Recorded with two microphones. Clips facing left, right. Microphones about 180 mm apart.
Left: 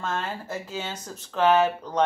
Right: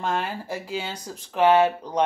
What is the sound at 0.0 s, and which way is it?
Speech, 15° right (ahead or behind).